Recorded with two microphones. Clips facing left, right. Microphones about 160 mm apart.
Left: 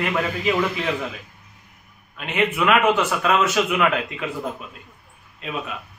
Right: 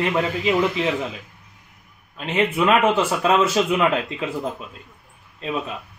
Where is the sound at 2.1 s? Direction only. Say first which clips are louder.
Right 2 dB; 30° right (ahead or behind).